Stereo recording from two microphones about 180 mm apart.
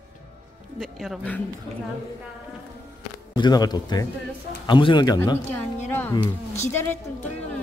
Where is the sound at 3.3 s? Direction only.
25° left (ahead or behind).